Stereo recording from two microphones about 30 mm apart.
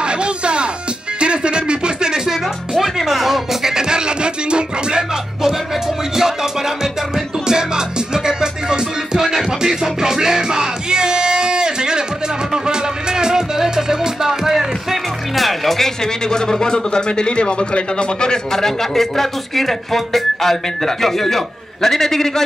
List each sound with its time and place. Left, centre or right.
0.0 s music: right
1.2 s a sound: right
2.8 s music: centre
3.7 s music: right
7.4 s music: right; by 15.9 s centre
16.3 s a man's voice: left
18.5 s speech: centre